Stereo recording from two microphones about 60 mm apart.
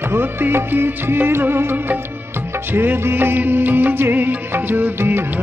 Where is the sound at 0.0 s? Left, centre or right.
Right.